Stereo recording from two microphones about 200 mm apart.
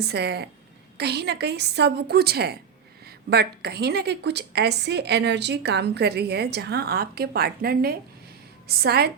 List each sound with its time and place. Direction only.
0.0 s a woman's voice: 55° right (ahead or behind)